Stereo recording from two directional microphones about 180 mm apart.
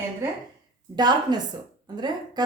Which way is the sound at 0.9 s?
25° right (ahead or behind).